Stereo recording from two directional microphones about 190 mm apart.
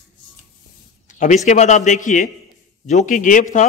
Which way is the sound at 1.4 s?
40° left (ahead or behind).